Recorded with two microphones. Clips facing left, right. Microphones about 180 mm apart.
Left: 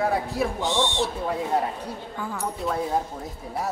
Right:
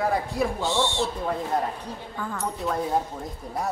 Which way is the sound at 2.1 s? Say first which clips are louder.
Even; 5° left (ahead or behind).